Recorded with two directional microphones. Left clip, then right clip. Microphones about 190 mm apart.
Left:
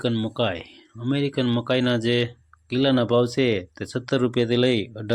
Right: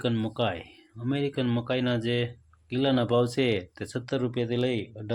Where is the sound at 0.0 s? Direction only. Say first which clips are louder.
Left 4 dB; 20° left (ahead or behind).